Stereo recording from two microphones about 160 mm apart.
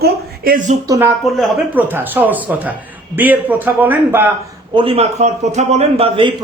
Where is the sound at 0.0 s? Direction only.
70° right (ahead or behind).